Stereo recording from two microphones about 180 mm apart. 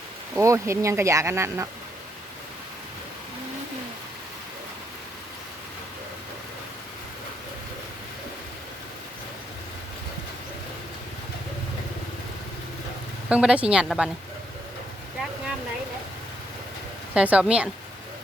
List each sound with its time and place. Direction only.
0.3 s speech: 15° right (ahead or behind)
13.2 s a woman's voice: 5° right (ahead or behind)
17.2 s speech: 5° right (ahead or behind)